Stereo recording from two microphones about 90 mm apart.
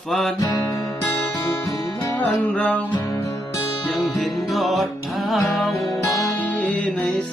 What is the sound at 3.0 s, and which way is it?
Music, 35° left (ahead or behind).